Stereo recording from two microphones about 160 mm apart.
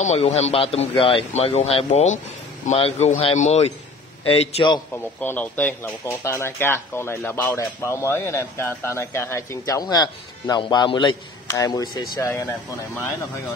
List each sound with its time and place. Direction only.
0.2 s speech: 40° left (ahead or behind)
5.2 s speech: 10° left (ahead or behind)